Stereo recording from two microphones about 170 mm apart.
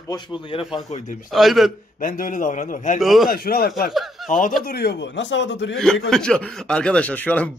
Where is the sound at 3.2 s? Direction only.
60° left (ahead or behind).